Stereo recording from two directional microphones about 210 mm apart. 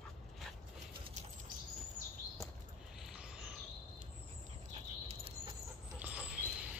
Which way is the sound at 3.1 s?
5° right (ahead or behind).